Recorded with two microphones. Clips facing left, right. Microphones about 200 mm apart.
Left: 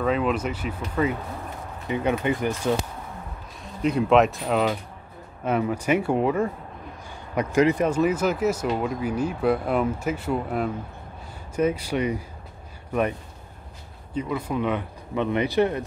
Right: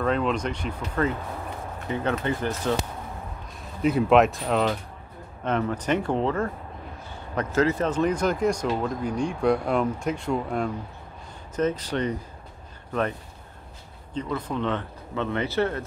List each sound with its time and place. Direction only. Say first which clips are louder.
0.0 s speech: left 1 dB; 5° left (ahead or behind)
3.8 s speech: even; centre (ahead or behind)
14.1 s speech: left 2 dB; 10° left (ahead or behind)